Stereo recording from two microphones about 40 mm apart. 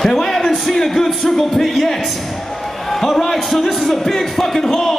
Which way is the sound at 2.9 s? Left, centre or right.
Centre.